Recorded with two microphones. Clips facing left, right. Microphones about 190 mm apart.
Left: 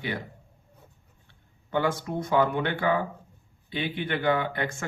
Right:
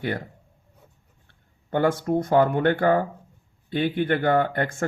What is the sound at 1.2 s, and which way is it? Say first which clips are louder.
Speech: left 1 dB; 50° right (ahead or behind).